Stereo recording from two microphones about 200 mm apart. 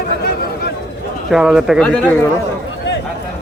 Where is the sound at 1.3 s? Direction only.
5° right (ahead or behind).